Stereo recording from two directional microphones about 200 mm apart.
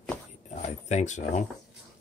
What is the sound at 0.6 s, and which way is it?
Speech, 35° left (ahead or behind).